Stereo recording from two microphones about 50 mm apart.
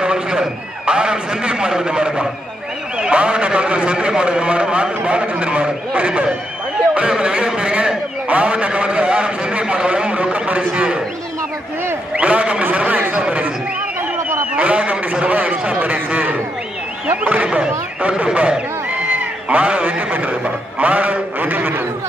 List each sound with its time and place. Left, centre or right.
0.0 s a man's voice: centre
12.2 s speech: right
14.5 s speech: right